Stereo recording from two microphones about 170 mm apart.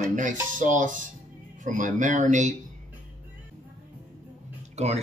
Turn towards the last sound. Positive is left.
turn(degrees=-40)  # may be behind; listen again after turning